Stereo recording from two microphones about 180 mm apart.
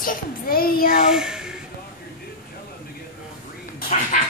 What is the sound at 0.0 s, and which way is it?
A child's voice, 50° left (ahead or behind).